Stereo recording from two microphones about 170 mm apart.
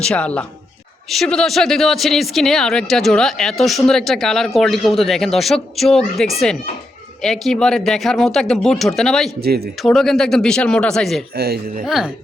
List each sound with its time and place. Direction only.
0.0 s speech: 5° left (ahead or behind)
11.3 s speech: 70° right (ahead or behind)
11.9 s speech: centre (ahead or behind)